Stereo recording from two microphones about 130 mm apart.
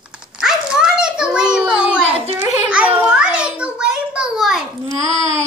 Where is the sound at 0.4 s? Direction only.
5° right (ahead or behind).